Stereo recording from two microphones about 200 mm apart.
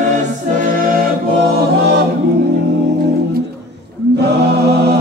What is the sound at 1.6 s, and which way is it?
Choir, 55° right (ahead or behind).